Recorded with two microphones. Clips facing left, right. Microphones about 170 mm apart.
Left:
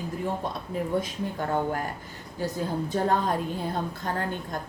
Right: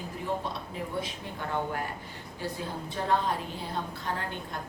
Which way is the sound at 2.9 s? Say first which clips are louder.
Left 2 dB; 45° left (ahead or behind).